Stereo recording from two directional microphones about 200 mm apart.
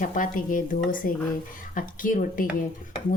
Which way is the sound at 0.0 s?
40° left (ahead or behind).